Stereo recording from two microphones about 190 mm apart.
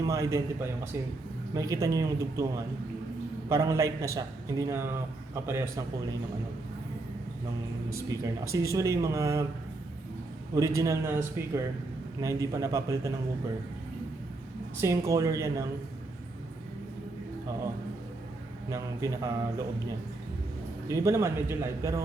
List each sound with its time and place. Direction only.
0.0 s a man's voice: 15° right (ahead or behind)
3.5 s a man's voice: 15° right (ahead or behind)
7.9 s a man's voice: 15° right (ahead or behind)
10.5 s a man's voice: 15° right (ahead or behind)
14.8 s a man's voice: 15° right (ahead or behind)
18.7 s a man's voice: 15° right (ahead or behind)
20.8 s a man's voice: 15° right (ahead or behind)